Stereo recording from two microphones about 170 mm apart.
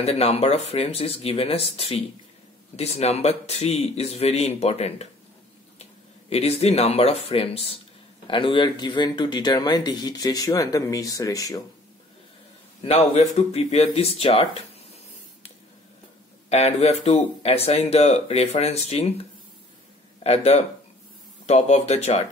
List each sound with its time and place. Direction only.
0.0 s speech: 35° left (ahead or behind)
6.3 s speech: 35° left (ahead or behind); by 11.6 s 20° left (ahead or behind)
12.8 s speech: 40° left (ahead or behind)
16.4 s speech: 40° left (ahead or behind)
20.2 s speech: 40° left (ahead or behind)